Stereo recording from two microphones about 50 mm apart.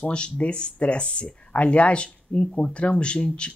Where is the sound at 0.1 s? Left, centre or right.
Left.